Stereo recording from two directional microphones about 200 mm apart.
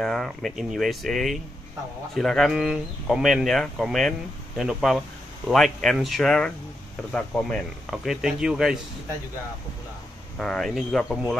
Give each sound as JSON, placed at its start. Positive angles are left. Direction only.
{"t": 0.0, "sound": "speech", "side_deg": 0}
{"t": 10.3, "sound": "speech", "side_deg": 0}